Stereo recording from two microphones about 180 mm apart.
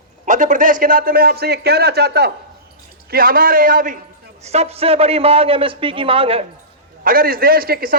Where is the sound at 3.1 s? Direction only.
55° right (ahead or behind).